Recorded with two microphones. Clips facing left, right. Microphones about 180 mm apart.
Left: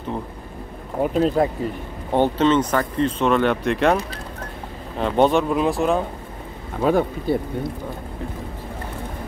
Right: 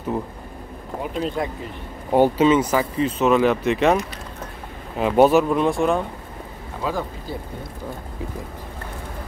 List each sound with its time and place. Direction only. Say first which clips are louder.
1.0 s speech: left 7 dB; 40° left (ahead or behind)
2.1 s speech: right 2 dB; 10° right (ahead or behind)
4.9 s speech: right 2 dB; 5° right (ahead or behind)
6.8 s speech: left 8 dB; 60° left (ahead or behind)